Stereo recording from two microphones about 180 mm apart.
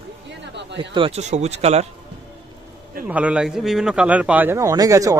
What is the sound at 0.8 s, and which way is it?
Speech, 30° right (ahead or behind).